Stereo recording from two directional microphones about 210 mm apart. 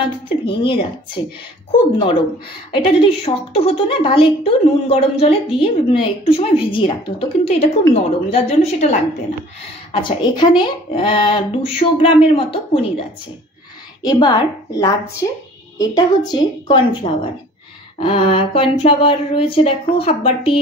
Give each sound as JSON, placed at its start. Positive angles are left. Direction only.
{"t": 0.0, "sound": "a woman's voice", "side_deg": 25}
{"t": 10.0, "sound": "a woman's voice", "side_deg": 20}
{"t": 14.0, "sound": "a woman's voice", "side_deg": 20}